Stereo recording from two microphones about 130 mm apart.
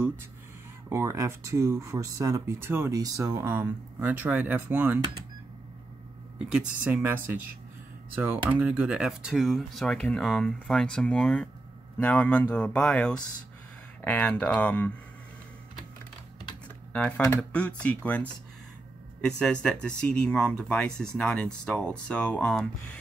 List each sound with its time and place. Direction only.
0.8 s speech: 20° right (ahead or behind)
6.8 s speech: 15° right (ahead or behind)
8.5 s speech: 10° right (ahead or behind); by 14.9 s 10° left (ahead or behind)
16.6 s typing: 10° left (ahead or behind)
17.4 s speech: 10° left (ahead or behind)
19.2 s speech: 5° left (ahead or behind)